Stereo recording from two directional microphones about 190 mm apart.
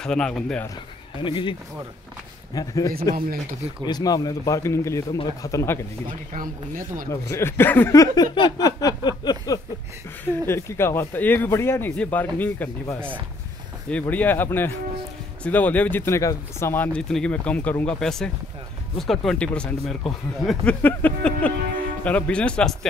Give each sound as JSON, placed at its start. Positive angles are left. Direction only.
{"t": 0.0, "sound": "speech", "side_deg": 5}
{"t": 1.2, "sound": "a man's voice", "side_deg": 25}
{"t": 2.9, "sound": "speech", "side_deg": -50}
{"t": 3.8, "sound": "speech", "side_deg": 20}
{"t": 6.7, "sound": "speech", "side_deg": -45}
{"t": 7.1, "sound": "speech", "side_deg": 15}